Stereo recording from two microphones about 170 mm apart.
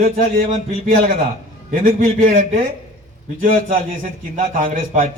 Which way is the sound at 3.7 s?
50° right (ahead or behind).